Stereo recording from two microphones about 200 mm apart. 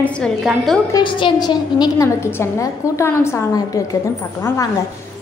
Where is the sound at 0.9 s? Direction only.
25° left (ahead or behind).